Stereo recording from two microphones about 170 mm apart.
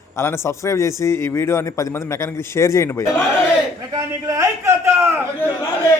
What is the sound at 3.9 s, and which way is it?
A man's voice, 20° right (ahead or behind).